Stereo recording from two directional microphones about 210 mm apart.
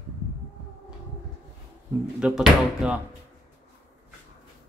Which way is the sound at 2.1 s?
5° right (ahead or behind).